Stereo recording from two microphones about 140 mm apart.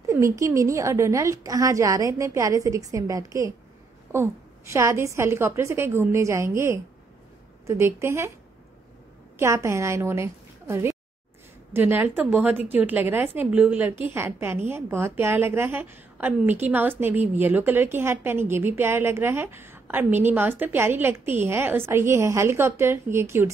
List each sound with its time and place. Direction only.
0.0 s a woman's voice: 20° right (ahead or behind)
9.4 s a woman's voice: 20° right (ahead or behind)